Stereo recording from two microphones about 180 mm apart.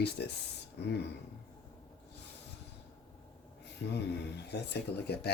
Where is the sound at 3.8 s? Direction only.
65° left (ahead or behind).